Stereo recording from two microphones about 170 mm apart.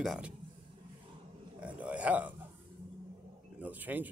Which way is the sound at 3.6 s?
10° right (ahead or behind).